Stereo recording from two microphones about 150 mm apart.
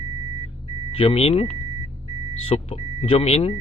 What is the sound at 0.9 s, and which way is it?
Speech, 40° left (ahead or behind).